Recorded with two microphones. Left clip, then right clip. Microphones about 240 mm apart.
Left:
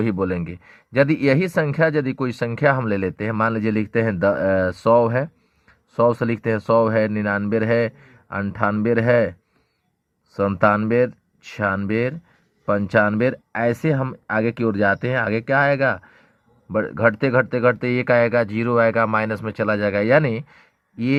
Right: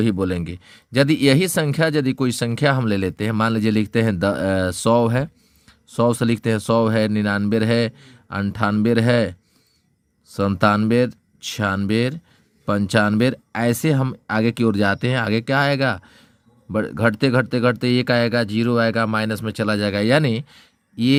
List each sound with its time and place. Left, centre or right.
0.0 s speech: right
10.3 s speech: right